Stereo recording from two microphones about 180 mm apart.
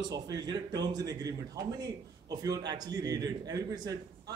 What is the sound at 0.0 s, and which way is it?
A man's voice, 20° right (ahead or behind).